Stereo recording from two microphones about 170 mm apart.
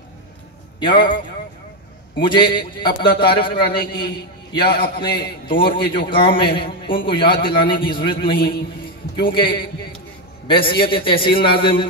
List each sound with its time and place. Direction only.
0.7 s a man's voice: 25° left (ahead or behind)